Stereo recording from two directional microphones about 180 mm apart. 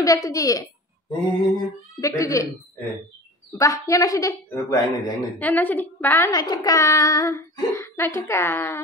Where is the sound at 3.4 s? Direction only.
15° left (ahead or behind).